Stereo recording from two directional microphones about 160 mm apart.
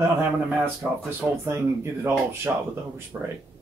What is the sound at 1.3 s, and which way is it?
Speech, 15° right (ahead or behind).